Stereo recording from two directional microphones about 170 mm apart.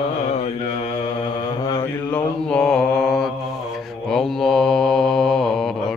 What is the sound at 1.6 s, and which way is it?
Mantra, 20° left (ahead or behind).